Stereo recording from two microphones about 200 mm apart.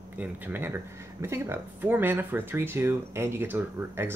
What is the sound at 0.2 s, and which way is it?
Speech, 10° right (ahead or behind).